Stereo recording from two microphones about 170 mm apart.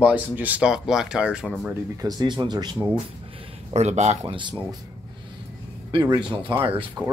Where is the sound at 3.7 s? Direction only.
40° right (ahead or behind).